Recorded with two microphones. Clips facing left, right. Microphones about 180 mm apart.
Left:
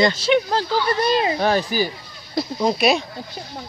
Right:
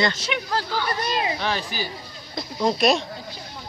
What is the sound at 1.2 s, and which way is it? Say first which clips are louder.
Speech: left 7 dB; 45° left (ahead or behind).